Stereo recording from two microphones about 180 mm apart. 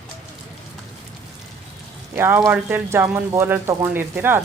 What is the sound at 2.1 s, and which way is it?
Speech, 15° right (ahead or behind).